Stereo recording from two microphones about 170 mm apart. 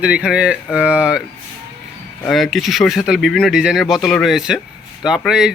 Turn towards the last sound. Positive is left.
turn(degrees=-5)  # may be behind; listen again after turning